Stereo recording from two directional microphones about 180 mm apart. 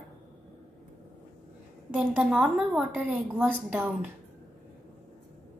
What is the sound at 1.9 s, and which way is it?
A woman's voice, 5° right (ahead or behind).